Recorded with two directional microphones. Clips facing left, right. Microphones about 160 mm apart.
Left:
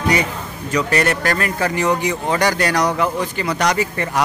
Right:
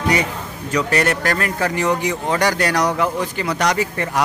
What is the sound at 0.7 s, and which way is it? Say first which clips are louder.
Speech: even; centre (ahead or behind).